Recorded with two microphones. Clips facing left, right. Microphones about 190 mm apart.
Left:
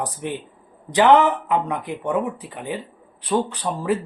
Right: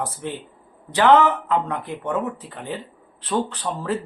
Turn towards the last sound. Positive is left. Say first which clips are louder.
# left 3 dB
turn(degrees=10)  # may be behind; listen again after turning